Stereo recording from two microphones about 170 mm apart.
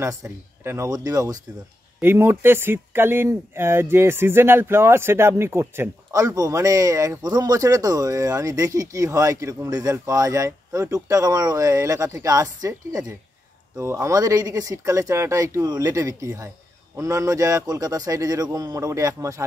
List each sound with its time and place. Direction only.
0.0 s speech: 20° right (ahead or behind)